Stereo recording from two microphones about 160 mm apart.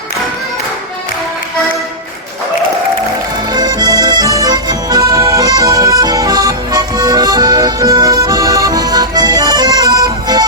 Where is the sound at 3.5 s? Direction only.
25° right (ahead or behind).